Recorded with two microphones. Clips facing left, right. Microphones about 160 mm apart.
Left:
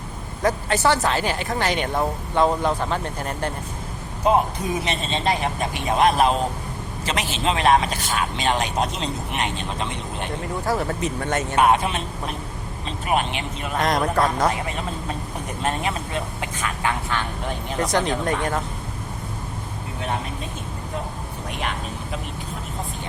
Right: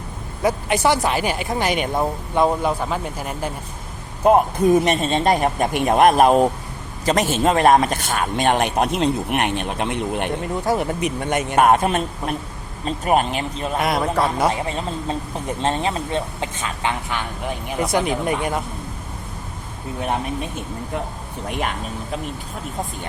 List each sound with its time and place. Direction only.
0.4 s speech: 15° right (ahead or behind)
4.2 s speech: 55° right (ahead or behind)
10.7 s speech: 15° right (ahead or behind)
11.5 s speech: 45° right (ahead or behind)
13.7 s speech: 5° right (ahead or behind)
15.6 s speech: 30° right (ahead or behind); by 18.6 s 10° right (ahead or behind)